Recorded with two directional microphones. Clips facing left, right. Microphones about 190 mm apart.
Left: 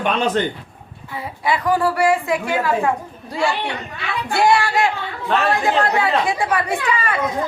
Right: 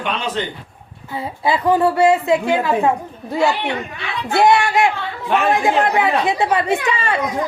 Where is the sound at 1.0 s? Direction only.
25° right (ahead or behind).